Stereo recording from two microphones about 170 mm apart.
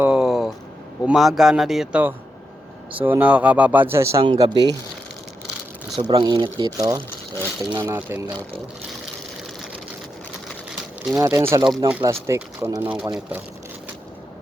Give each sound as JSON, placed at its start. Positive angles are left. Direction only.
{"t": 0.0, "sound": "a sound", "side_deg": -5}
{"t": 1.0, "sound": "a man's voice", "side_deg": 0}
{"t": 4.2, "sound": "speech", "side_deg": -30}
{"t": 6.0, "sound": "speech", "side_deg": -25}
{"t": 11.1, "sound": "a man's voice", "side_deg": -15}